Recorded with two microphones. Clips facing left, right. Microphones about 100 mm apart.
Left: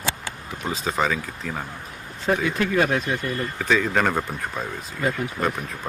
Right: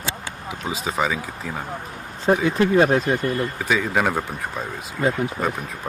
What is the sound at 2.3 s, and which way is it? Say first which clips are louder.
Speech: right 4 dB; 25° right (ahead or behind).